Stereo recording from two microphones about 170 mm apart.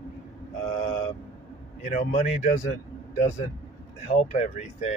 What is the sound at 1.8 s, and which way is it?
A man's voice, 45° left (ahead or behind).